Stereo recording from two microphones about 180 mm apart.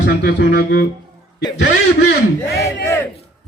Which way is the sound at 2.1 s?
65° left (ahead or behind).